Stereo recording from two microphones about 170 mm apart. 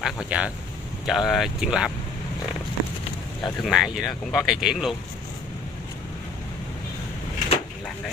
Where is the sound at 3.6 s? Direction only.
5° right (ahead or behind).